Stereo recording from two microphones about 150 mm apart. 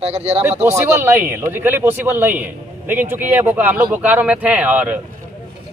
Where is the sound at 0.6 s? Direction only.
15° right (ahead or behind).